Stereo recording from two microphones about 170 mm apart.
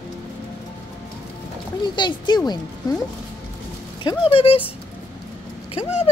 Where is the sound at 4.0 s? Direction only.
30° left (ahead or behind).